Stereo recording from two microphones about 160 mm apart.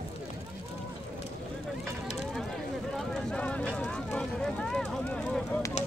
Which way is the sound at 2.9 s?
5° left (ahead or behind).